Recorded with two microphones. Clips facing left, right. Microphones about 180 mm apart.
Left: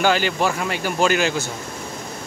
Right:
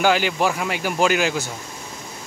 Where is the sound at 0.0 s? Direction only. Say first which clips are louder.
Even; 10° right (ahead or behind).